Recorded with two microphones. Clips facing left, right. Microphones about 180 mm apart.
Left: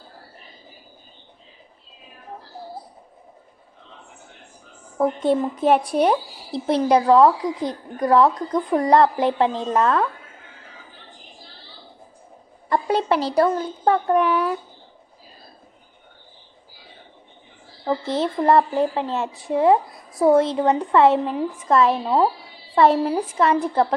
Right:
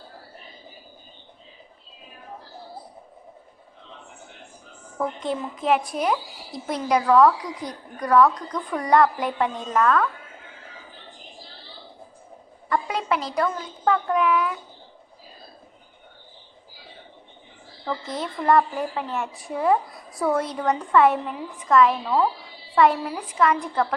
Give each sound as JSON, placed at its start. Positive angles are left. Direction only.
{"t": 4.9, "sound": "a child's voice", "side_deg": 30}
{"t": 12.6, "sound": "a child's voice", "side_deg": 30}
{"t": 17.8, "sound": "a woman's voice", "side_deg": 30}